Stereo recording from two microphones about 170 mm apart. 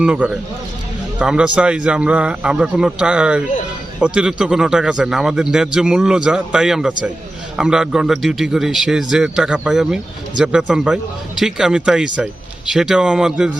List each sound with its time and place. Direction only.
0.0 s a man's voice: 5° right (ahead or behind)